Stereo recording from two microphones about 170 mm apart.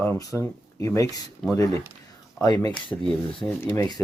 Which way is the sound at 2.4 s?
25° left (ahead or behind).